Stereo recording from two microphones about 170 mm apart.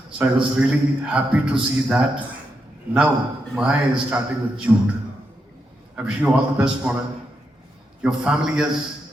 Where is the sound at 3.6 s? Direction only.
5° right (ahead or behind).